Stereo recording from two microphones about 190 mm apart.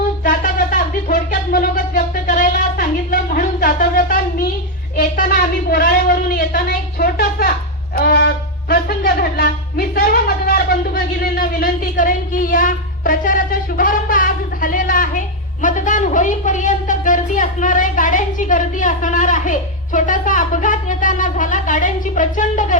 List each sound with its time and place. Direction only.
0.3 s a sound: 45° left (ahead or behind)
4.9 s a woman's voice: 50° left (ahead or behind)
7.9 s music: 55° left (ahead or behind)
8.7 s a woman's voice: 50° left (ahead or behind)